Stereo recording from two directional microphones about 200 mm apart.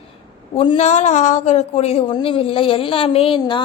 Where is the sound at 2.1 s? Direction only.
25° left (ahead or behind).